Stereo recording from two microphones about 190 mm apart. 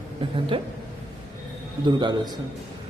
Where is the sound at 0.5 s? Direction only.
25° right (ahead or behind).